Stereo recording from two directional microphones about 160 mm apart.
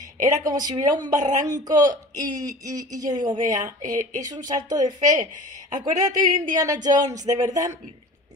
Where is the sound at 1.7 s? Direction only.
25° right (ahead or behind).